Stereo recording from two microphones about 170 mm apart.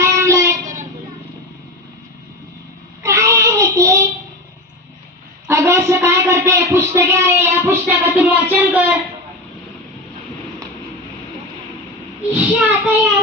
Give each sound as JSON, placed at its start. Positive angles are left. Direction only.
{"t": 0.0, "sound": "child singing", "side_deg": -15}
{"t": 3.0, "sound": "child singing", "side_deg": -20}
{"t": 5.5, "sound": "a sound", "side_deg": -15}
{"t": 12.3, "sound": "child singing", "side_deg": -5}